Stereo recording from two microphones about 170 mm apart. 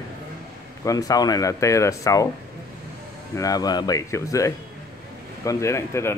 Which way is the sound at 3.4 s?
20° left (ahead or behind).